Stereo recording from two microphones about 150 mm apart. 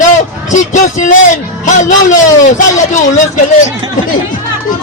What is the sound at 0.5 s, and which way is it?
A man's voice, 55° left (ahead or behind).